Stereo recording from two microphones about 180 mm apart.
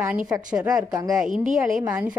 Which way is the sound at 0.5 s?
5° right (ahead or behind).